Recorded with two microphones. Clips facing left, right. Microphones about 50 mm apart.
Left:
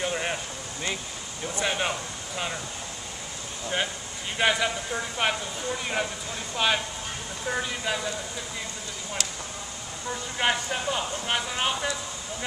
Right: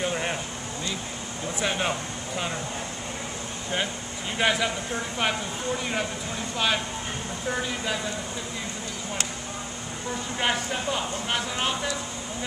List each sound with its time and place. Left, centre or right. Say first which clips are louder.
0.0 s a sound: right 1 dB; centre
1.5 s speech: right 1 dB; centre
4.4 s speech: even; centre
10.4 s speech: left 1 dB; centre